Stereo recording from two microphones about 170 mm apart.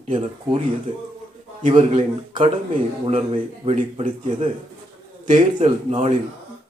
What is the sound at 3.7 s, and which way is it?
Speech, 35° right (ahead or behind).